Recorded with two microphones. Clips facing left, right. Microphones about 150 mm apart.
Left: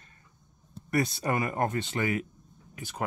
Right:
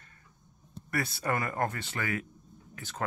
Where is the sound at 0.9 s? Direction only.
20° left (ahead or behind).